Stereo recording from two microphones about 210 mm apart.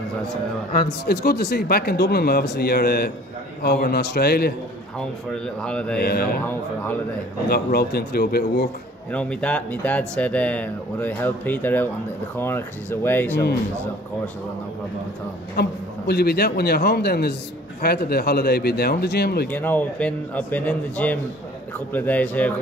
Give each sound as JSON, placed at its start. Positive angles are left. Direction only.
{"t": 0.7, "sound": "speech", "side_deg": 50}
{"t": 4.9, "sound": "speech", "side_deg": 5}
{"t": 5.9, "sound": "speech", "side_deg": 45}
{"t": 7.4, "sound": "speech", "side_deg": 50}
{"t": 9.1, "sound": "speech", "side_deg": 5}
{"t": 15.6, "sound": "speech", "side_deg": 50}
{"t": 19.5, "sound": "speech", "side_deg": 10}